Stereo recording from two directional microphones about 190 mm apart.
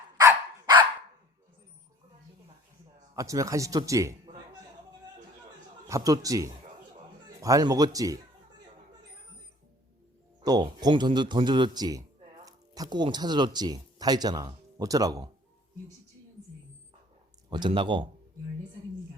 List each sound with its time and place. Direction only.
0.2 s dog: 15° right (ahead or behind)
3.2 s speech: 15° right (ahead or behind)
5.9 s a man's voice: 20° right (ahead or behind)
10.4 s speech: 20° right (ahead or behind)
17.5 s speech: 25° right (ahead or behind)